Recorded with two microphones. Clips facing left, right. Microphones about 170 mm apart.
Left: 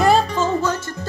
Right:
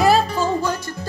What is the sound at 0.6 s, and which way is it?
Music, 15° right (ahead or behind).